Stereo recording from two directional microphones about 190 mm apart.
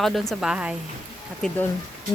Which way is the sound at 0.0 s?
Centre (ahead or behind).